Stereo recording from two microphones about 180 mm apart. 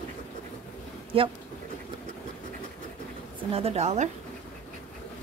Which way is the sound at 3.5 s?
35° right (ahead or behind).